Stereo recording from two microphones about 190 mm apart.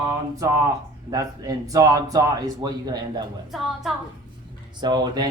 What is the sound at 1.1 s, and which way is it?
A man's voice, 20° right (ahead or behind).